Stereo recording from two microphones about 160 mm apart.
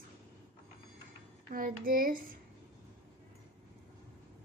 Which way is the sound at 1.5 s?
60° right (ahead or behind).